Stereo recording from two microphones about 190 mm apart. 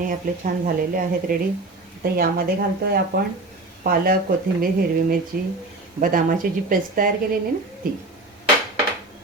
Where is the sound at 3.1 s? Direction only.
55° right (ahead or behind).